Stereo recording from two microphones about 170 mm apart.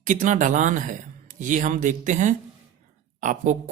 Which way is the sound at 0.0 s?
50° right (ahead or behind).